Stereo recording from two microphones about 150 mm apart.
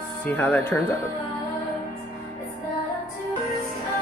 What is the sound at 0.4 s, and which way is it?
Speech, 15° left (ahead or behind).